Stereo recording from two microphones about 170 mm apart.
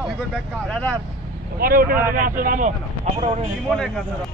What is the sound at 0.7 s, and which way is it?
Speech, 5° left (ahead or behind).